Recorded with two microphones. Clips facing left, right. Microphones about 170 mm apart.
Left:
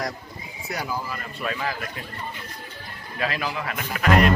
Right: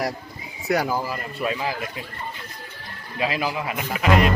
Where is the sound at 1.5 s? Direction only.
15° right (ahead or behind).